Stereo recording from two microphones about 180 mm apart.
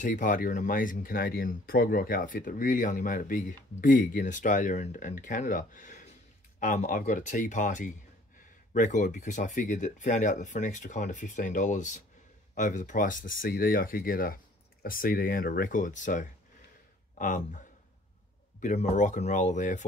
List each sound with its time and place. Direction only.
0.0 s speech: 45° left (ahead or behind)